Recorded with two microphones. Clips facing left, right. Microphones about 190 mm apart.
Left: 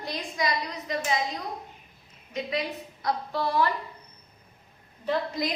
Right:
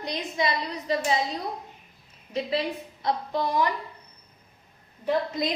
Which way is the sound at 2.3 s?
30° right (ahead or behind).